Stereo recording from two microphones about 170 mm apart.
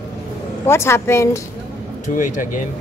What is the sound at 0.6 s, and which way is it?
Speech, 15° left (ahead or behind).